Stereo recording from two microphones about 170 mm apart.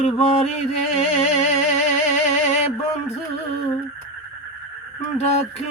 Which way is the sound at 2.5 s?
40° left (ahead or behind).